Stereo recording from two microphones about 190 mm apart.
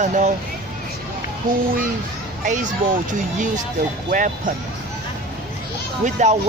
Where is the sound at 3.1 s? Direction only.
40° right (ahead or behind).